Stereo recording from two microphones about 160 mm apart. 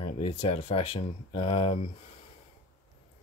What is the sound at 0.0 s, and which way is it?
Speech, 35° left (ahead or behind).